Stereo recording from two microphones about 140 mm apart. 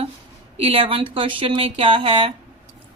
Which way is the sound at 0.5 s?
45° right (ahead or behind).